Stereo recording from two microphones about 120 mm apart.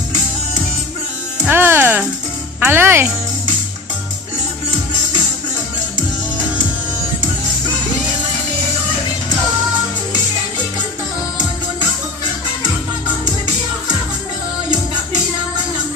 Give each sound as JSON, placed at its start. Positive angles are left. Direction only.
{"t": 1.5, "sound": "music", "side_deg": -20}
{"t": 2.6, "sound": "speech", "side_deg": -20}